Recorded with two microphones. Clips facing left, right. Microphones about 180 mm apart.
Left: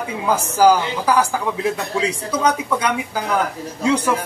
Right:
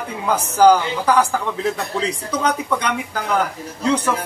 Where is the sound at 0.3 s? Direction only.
5° left (ahead or behind).